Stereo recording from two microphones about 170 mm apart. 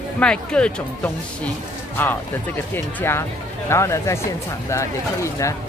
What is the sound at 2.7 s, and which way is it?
Speech, 15° left (ahead or behind).